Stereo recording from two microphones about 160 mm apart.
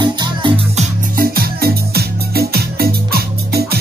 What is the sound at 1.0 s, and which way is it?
Music, 65° right (ahead or behind).